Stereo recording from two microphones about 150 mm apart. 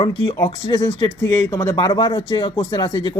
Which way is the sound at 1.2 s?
20° left (ahead or behind).